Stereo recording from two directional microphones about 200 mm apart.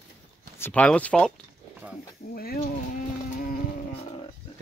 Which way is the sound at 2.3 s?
50° left (ahead or behind).